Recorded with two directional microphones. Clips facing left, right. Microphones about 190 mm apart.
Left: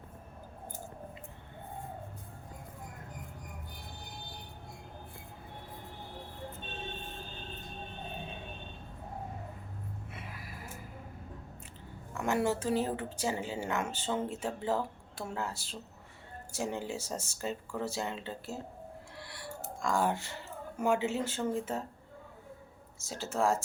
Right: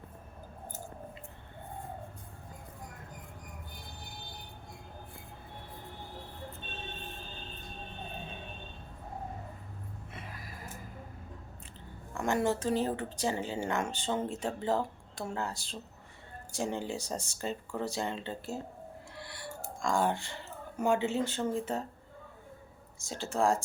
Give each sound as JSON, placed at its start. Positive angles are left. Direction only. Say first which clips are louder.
{"t": 10.2, "sound": "music", "louder": "even", "side_deg": 10}
{"t": 12.1, "sound": "speech", "louder": "right 1 dB", "side_deg": 5}
{"t": 19.2, "sound": "a sound", "louder": "right 3 dB", "side_deg": 0}
{"t": 19.8, "sound": "speech", "louder": "right 1 dB", "side_deg": 5}
{"t": 23.0, "sound": "speech", "louder": "right 1 dB", "side_deg": 5}